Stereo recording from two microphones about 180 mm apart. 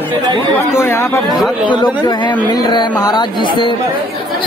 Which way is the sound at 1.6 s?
25° left (ahead or behind).